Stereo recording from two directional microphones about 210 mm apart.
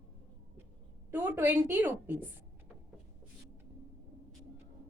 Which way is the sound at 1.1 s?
10° right (ahead or behind).